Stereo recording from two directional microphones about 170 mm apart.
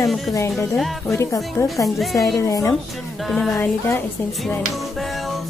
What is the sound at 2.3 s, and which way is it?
A woman's voice, 20° left (ahead or behind).